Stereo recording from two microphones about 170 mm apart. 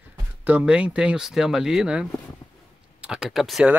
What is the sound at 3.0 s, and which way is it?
Speech, 5° right (ahead or behind).